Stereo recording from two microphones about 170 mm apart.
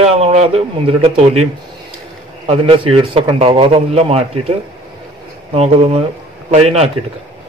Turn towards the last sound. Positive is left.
turn(degrees=-40)  # may be behind; listen again after turning